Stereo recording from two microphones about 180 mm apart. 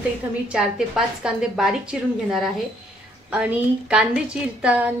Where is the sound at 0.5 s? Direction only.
5° right (ahead or behind).